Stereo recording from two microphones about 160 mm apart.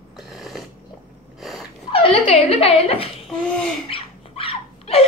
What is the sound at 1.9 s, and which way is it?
Speech, 35° left (ahead or behind).